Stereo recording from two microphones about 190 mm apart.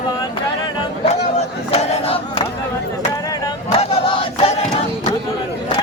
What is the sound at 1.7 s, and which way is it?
Crowd, 30° left (ahead or behind).